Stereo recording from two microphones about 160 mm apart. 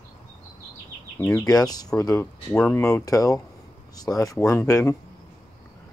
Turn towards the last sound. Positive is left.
turn(degrees=20)  # may be behind; listen again after turning